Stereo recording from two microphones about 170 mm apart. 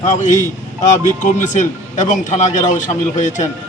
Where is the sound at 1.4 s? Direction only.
45° left (ahead or behind).